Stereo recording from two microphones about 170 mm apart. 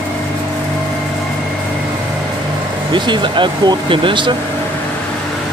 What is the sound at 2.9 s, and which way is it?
Speech, 30° right (ahead or behind).